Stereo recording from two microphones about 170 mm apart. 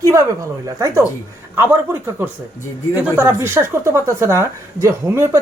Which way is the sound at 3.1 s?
15° right (ahead or behind).